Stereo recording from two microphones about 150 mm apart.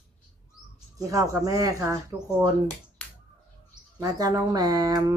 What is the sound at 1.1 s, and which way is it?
Speech, 20° right (ahead or behind).